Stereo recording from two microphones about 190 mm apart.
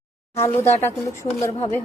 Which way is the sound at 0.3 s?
15° left (ahead or behind).